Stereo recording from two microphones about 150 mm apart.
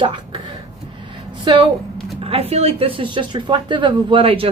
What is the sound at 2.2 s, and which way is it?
Speech, 40° right (ahead or behind).